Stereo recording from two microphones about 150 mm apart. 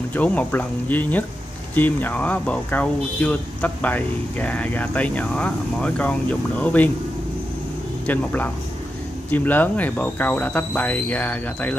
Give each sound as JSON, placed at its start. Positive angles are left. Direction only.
{"t": 0.1, "sound": "speech", "side_deg": 10}
{"t": 8.1, "sound": "speech", "side_deg": 10}